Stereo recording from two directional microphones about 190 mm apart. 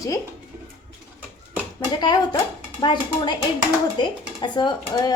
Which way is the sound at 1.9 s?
20° left (ahead or behind).